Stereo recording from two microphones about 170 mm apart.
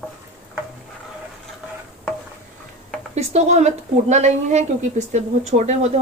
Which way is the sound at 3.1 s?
40° right (ahead or behind).